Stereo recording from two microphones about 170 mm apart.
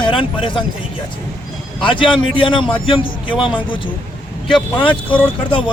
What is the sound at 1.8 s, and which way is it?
Speech, 30° left (ahead or behind).